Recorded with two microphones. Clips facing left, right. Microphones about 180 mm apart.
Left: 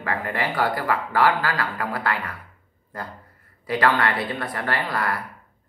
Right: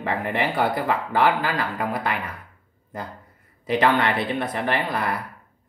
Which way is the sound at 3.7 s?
20° right (ahead or behind).